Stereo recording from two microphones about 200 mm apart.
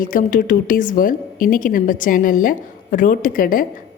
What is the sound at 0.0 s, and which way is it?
A woman's voice, 40° left (ahead or behind).